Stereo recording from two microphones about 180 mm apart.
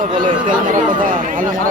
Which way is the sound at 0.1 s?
45° right (ahead or behind).